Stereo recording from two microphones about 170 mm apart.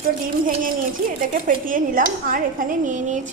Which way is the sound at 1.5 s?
55° right (ahead or behind).